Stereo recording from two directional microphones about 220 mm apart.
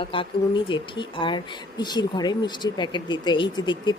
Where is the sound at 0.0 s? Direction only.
25° left (ahead or behind).